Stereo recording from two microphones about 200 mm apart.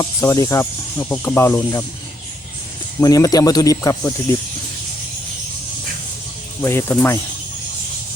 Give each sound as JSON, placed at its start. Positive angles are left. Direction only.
{"t": 0.0, "sound": "speech", "side_deg": 15}
{"t": 3.0, "sound": "speech", "side_deg": 15}
{"t": 6.6, "sound": "speech", "side_deg": 10}